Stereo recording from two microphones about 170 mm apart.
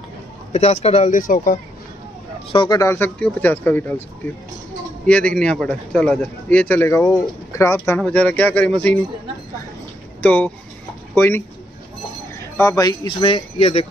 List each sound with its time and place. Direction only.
0.5 s a man's voice: 40° left (ahead or behind)
1.1 s speech: 55° left (ahead or behind)
2.5 s a man's voice: 25° left (ahead or behind)
5.0 s a man's voice: 5° left (ahead or behind)
10.2 s a man's voice: 10° left (ahead or behind)
12.5 s speech: 20° left (ahead or behind); by 13.8 s 35° left (ahead or behind)